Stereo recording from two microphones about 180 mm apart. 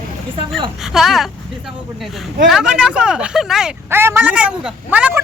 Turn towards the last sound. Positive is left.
turn(degrees=-10)  # may be behind; listen again after turning